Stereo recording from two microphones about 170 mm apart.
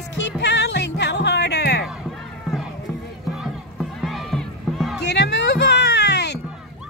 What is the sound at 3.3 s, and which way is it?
Rowboat, centre (ahead or behind).